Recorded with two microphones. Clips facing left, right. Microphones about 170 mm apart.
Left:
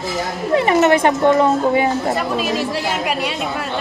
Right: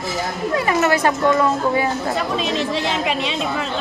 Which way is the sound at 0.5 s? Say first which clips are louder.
Left 5 dB; 25° left (ahead or behind).